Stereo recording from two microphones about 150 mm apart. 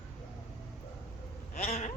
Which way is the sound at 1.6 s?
45° left (ahead or behind).